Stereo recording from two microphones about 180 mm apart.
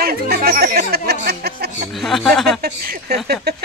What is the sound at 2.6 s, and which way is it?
Speech, 55° right (ahead or behind).